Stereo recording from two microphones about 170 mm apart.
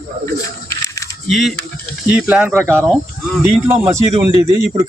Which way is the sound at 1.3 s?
Centre (ahead or behind).